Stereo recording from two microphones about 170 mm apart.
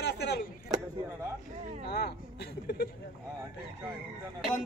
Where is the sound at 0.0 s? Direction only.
75° left (ahead or behind).